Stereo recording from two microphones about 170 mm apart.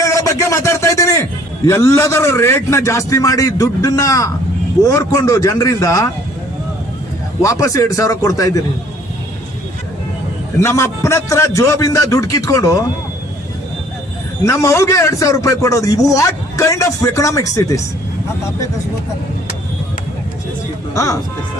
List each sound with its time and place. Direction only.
0.0 s a man's voice: 15° left (ahead or behind)
7.4 s speech: 20° left (ahead or behind)
10.6 s a man's voice: 15° left (ahead or behind)
14.4 s speech: 15° left (ahead or behind)
20.9 s speech: 20° left (ahead or behind)